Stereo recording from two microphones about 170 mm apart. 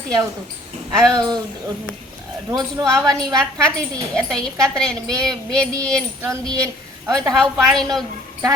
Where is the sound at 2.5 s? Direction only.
20° right (ahead or behind).